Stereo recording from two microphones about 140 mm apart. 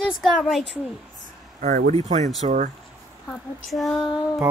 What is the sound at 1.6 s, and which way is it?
Speech, 60° right (ahead or behind).